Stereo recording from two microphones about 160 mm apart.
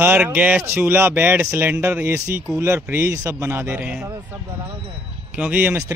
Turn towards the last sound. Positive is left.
turn(degrees=-10)  # may be behind; listen again after turning